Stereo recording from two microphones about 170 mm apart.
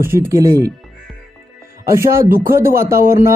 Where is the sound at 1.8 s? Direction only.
15° right (ahead or behind).